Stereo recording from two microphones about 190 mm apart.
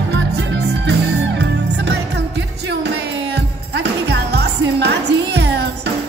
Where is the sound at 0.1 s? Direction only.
65° right (ahead or behind).